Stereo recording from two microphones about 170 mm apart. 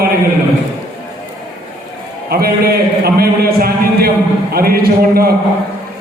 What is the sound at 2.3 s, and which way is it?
A man's voice, 65° right (ahead or behind).